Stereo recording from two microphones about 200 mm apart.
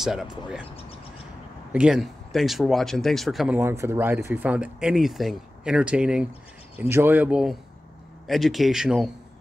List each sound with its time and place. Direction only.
0.0 s speech: centre (ahead or behind)
1.7 s speech: 5° right (ahead or behind)